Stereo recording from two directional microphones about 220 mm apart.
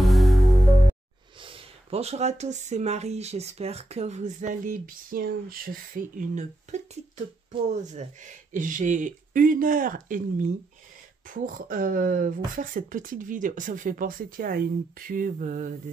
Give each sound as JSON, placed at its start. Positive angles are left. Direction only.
{"t": 0.1, "sound": "music", "side_deg": 0}
{"t": 1.4, "sound": "speech", "side_deg": -25}